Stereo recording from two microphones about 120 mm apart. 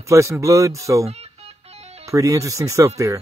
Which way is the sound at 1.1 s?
60° right (ahead or behind).